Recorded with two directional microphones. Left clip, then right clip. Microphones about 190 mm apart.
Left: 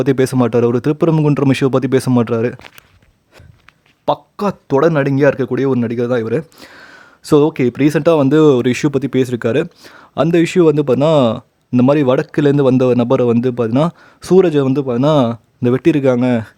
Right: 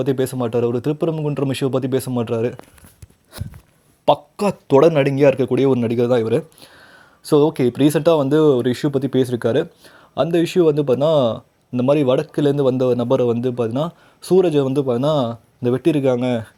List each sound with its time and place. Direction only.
0.0 s speech: 25° left (ahead or behind)
4.0 s speech: 10° left (ahead or behind)
6.7 s a sound: 25° left (ahead or behind)
7.4 s speech: 50° left (ahead or behind)
7.9 s speech: 20° left (ahead or behind)